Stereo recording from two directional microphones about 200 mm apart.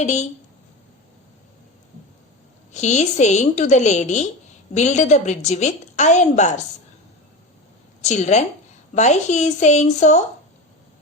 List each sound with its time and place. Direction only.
0.0 s a woman's voice: 35° left (ahead or behind)
2.7 s a woman's voice: 35° left (ahead or behind)
8.0 s a woman's voice: 35° left (ahead or behind)